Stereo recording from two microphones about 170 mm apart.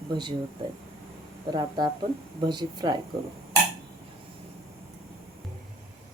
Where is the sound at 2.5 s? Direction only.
25° right (ahead or behind).